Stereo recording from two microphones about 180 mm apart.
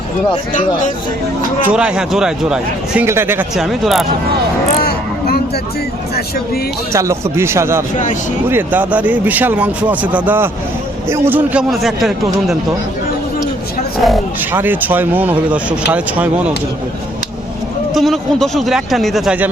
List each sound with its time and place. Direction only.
1.7 s speech: 5° right (ahead or behind)
3.5 s speech: centre (ahead or behind)
4.8 s a sound: 60° left (ahead or behind)
6.9 s speech: 15° right (ahead or behind)
14.0 s speech: centre (ahead or behind)
17.9 s speech: centre (ahead or behind)